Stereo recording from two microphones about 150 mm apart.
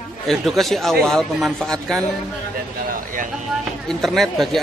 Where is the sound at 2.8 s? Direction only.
65° right (ahead or behind).